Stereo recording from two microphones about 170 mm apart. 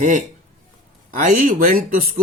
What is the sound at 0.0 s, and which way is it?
Speech, 45° right (ahead or behind).